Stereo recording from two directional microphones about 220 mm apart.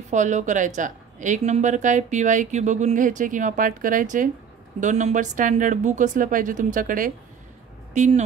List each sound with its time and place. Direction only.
0.1 s a woman's voice: 35° right (ahead or behind)